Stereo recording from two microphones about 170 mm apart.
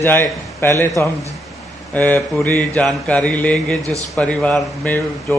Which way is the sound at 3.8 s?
20° right (ahead or behind).